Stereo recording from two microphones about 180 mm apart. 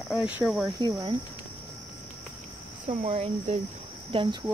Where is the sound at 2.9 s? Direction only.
35° right (ahead or behind).